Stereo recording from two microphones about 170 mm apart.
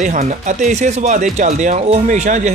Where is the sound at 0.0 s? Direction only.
45° right (ahead or behind).